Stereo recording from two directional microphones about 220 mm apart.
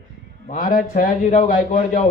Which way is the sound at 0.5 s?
40° left (ahead or behind).